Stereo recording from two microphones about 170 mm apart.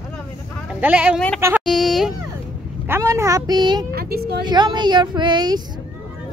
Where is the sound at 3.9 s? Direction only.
65° right (ahead or behind).